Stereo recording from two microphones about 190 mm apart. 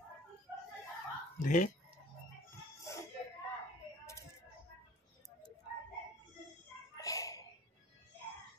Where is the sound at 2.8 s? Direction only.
15° left (ahead or behind).